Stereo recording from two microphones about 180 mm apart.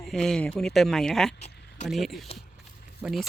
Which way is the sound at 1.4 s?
40° left (ahead or behind).